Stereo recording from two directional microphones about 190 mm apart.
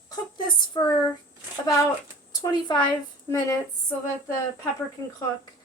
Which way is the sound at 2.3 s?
25° left (ahead or behind).